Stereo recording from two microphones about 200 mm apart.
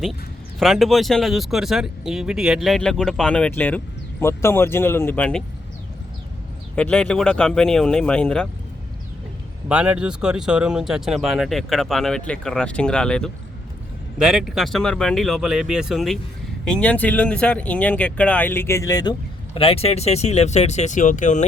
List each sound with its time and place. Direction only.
0.6 s speech: centre (ahead or behind)
6.7 s speech: 5° left (ahead or behind)
9.6 s speech: 5° right (ahead or behind); by 19.1 s 20° left (ahead or behind)
19.5 s speech: 30° left (ahead or behind)